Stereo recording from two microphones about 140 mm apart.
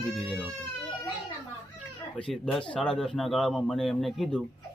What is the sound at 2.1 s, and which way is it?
Speech, 10° left (ahead or behind).